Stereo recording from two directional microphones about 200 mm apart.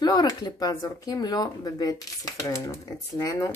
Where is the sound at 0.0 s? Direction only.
20° left (ahead or behind).